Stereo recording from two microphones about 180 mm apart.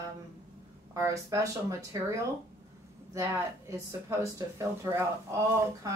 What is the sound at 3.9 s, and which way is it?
Speech, 15° right (ahead or behind).